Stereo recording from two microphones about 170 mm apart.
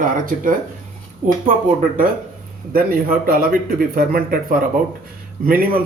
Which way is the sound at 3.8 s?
60° right (ahead or behind).